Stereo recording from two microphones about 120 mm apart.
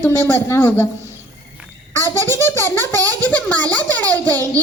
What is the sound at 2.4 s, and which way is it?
Speech, 20° left (ahead or behind).